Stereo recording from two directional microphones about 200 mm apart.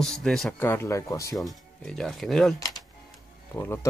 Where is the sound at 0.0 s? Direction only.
Centre (ahead or behind).